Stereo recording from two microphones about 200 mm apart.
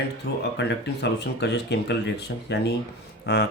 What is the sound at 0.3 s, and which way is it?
Speech, 55° left (ahead or behind).